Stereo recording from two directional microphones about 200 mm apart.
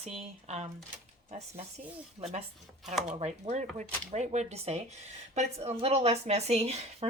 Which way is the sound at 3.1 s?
30° right (ahead or behind).